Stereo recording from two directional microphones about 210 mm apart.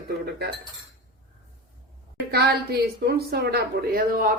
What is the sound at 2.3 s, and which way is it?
A woman's voice, 50° right (ahead or behind).